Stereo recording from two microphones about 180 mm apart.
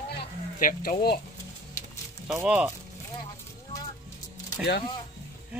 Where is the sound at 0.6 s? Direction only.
50° left (ahead or behind).